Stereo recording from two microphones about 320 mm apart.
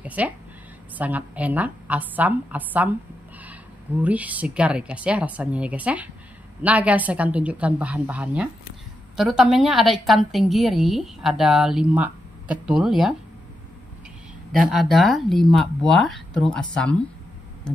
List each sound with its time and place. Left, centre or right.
0.0 s a woman's voice: centre
14.5 s a woman's voice: centre
17.7 s a sound: centre